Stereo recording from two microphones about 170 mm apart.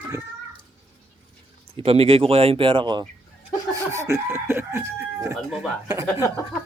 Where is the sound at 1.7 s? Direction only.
35° right (ahead or behind); by 5.7 s 5° right (ahead or behind).